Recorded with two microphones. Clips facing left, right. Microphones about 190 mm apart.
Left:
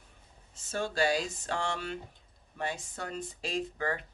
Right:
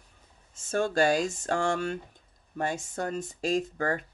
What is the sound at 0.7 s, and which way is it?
Speech, 50° right (ahead or behind).